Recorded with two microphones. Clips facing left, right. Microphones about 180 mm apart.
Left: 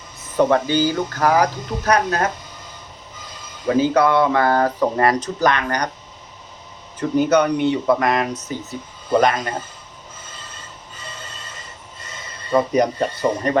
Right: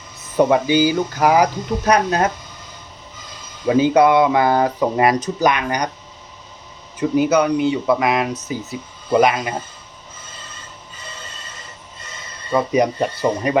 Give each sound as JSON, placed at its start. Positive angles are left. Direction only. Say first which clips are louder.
{"t": 0.3, "sound": "speech", "louder": "right 2 dB", "side_deg": -10}
{"t": 3.7, "sound": "speech", "louder": "right 3 dB", "side_deg": -15}
{"t": 7.0, "sound": "speech", "louder": "right 1 dB", "side_deg": -5}
{"t": 12.5, "sound": "speech", "louder": "even", "side_deg": -5}